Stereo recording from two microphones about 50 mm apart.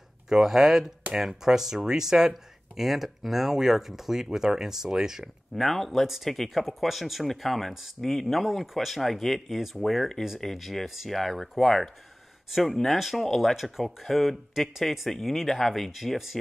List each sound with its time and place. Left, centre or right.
0.3 s speech: centre
5.6 s speech: centre